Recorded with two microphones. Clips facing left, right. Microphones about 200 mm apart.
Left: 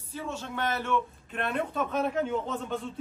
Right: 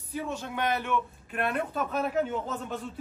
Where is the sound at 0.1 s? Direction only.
15° right (ahead or behind).